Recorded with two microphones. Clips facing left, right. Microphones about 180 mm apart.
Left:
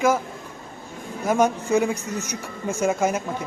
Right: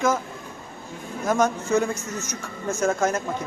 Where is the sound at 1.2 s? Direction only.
10° left (ahead or behind).